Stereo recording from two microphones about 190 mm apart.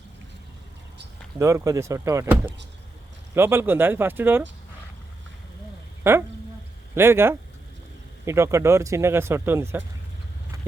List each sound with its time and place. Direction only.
1.4 s speech: 15° right (ahead or behind)
6.0 s speech: 10° right (ahead or behind)
10.5 s a sound: 15° right (ahead or behind)